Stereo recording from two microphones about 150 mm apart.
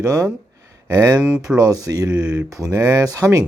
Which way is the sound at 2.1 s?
10° right (ahead or behind).